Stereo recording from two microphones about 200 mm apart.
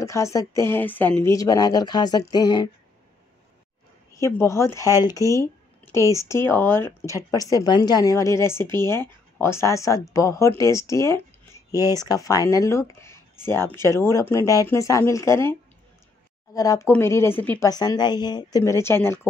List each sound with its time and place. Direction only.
0.0 s speech: 15° left (ahead or behind)
4.1 s speech: 15° left (ahead or behind)
16.5 s speech: 15° left (ahead or behind)